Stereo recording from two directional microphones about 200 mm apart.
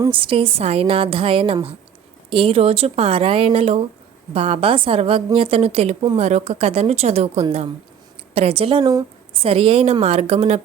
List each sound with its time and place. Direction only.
0.0 s a woman's voice: 25° right (ahead or behind)
8.8 s a woman's voice: 15° right (ahead or behind)